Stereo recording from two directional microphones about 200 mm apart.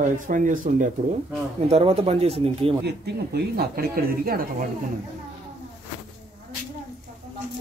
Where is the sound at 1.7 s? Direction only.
30° right (ahead or behind).